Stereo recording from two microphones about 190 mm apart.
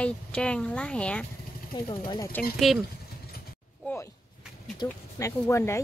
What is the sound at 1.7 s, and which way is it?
Speech, 20° left (ahead or behind).